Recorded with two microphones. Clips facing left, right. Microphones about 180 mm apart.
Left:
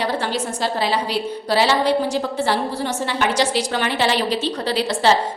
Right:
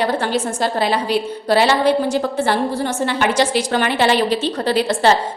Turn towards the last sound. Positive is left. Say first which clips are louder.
# right 3 dB
turn(degrees=-50)  # may be behind; listen again after turning